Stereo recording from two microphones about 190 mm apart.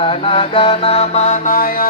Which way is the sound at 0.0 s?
30° left (ahead or behind).